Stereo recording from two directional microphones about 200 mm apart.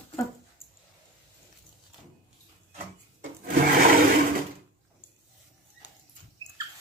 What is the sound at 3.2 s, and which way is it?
Rub, 45° right (ahead or behind).